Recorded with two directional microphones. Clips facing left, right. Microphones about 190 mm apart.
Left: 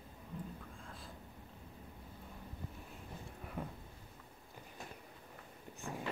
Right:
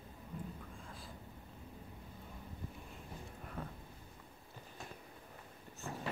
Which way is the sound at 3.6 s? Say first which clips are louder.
Left 2 dB; 10° left (ahead or behind).